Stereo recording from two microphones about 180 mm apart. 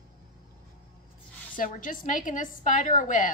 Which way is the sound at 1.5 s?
50° left (ahead or behind).